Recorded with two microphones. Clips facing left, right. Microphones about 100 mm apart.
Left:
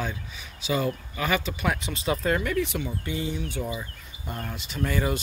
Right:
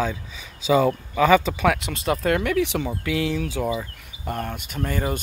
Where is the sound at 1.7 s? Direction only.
70° right (ahead or behind).